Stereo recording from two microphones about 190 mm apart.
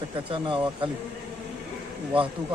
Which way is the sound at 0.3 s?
25° right (ahead or behind).